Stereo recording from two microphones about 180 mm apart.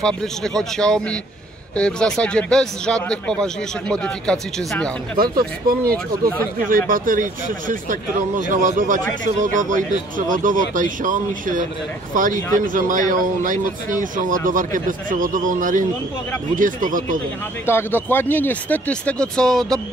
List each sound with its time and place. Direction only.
0.0 s speech: 5° left (ahead or behind)
5.7 s speech: 55° right (ahead or behind)
17.6 s speech: 10° left (ahead or behind)